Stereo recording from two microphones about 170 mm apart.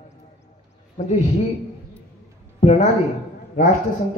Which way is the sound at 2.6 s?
40° left (ahead or behind).